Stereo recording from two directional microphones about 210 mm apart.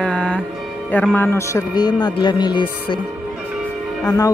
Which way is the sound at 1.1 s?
10° left (ahead or behind).